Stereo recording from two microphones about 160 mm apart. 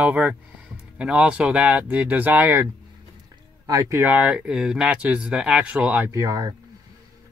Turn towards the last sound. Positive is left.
turn(degrees=-20)  # may be behind; listen again after turning